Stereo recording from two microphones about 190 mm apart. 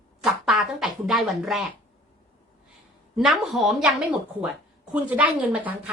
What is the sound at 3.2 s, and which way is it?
A woman's voice, centre (ahead or behind).